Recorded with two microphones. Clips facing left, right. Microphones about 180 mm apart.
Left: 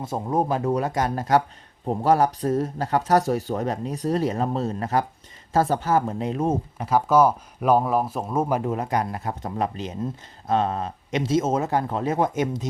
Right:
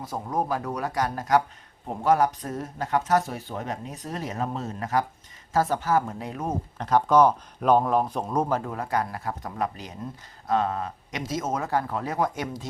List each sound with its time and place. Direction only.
0.0 s speech: 25° left (ahead or behind)
6.7 s speech: 5° left (ahead or behind)